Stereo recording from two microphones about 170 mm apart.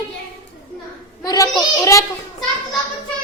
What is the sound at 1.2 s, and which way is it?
Speech, 20° left (ahead or behind).